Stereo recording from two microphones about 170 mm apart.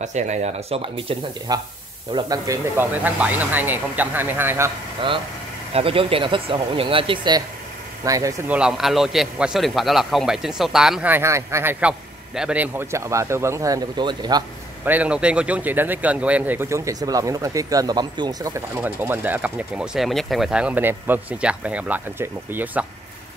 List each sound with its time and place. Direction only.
0.0 s speech: 45° right (ahead or behind); by 4.6 s 10° right (ahead or behind)
5.7 s speech: 35° right (ahead or behind)
8.5 s a man's voice: 5° right (ahead or behind); by 14.4 s 25° right (ahead or behind)
14.9 s speech: 10° right (ahead or behind); by 18.5 s 25° right (ahead or behind)
18.8 s speech: 10° right (ahead or behind)